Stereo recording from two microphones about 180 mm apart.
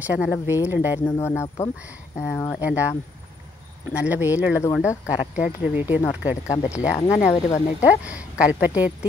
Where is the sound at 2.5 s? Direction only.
10° right (ahead or behind).